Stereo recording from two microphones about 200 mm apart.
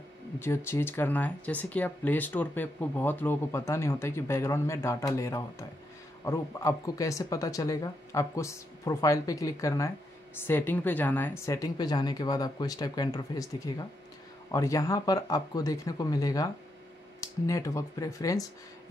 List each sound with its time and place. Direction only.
0.4 s speech: 10° left (ahead or behind)
17.5 s speech: 15° left (ahead or behind)